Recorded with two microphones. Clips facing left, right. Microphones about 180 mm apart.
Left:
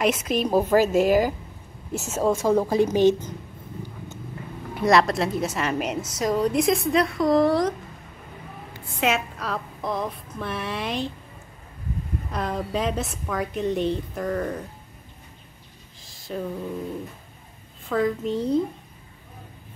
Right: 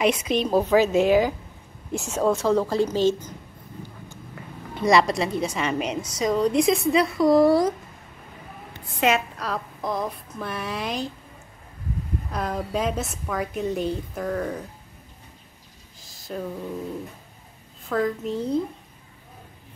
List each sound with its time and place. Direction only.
0.0 s a woman's voice: 5° left (ahead or behind); by 3.3 s 20° left (ahead or behind)
4.7 s a woman's voice: centre (ahead or behind)
8.9 s a woman's voice: centre (ahead or behind)
12.3 s a woman's voice: centre (ahead or behind)
16.1 s a sound: centre (ahead or behind)
17.8 s a woman's voice: centre (ahead or behind)